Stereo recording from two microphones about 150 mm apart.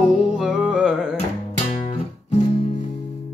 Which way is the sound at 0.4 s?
5° right (ahead or behind).